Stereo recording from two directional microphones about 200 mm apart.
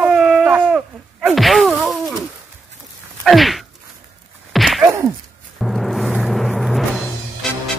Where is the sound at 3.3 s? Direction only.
Centre (ahead or behind).